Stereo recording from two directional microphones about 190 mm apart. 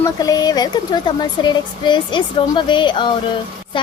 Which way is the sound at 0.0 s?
20° left (ahead or behind).